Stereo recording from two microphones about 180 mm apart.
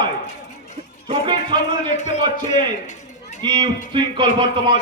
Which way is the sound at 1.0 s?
30° right (ahead or behind).